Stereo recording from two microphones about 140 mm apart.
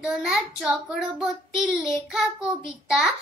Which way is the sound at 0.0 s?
5° right (ahead or behind).